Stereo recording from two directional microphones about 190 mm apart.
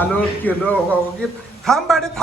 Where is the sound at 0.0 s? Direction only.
10° left (ahead or behind).